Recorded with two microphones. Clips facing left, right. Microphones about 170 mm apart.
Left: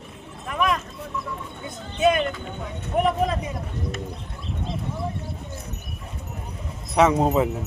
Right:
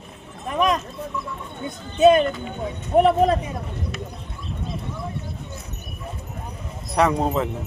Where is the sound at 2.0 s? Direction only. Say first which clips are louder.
Right 6 dB; 30° right (ahead or behind).